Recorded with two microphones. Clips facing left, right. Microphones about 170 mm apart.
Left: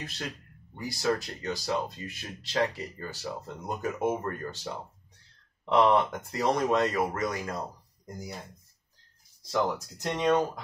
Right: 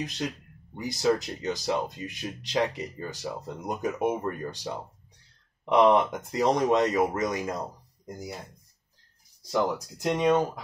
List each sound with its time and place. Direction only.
0.7 s speech: 20° right (ahead or behind)
9.5 s speech: 10° right (ahead or behind)